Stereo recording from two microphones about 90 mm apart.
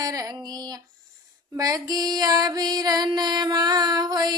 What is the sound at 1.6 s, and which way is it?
Female singing, 45° right (ahead or behind).